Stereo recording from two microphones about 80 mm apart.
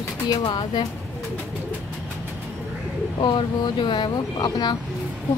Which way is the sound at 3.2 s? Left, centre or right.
Left.